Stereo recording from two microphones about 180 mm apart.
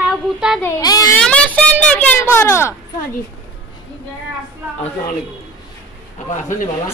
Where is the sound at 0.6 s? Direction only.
15° left (ahead or behind).